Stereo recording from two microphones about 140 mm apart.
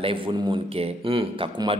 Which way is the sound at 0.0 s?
40° right (ahead or behind).